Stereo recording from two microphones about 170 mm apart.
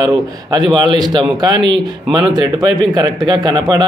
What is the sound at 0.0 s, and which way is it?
A man's voice, 25° right (ahead or behind).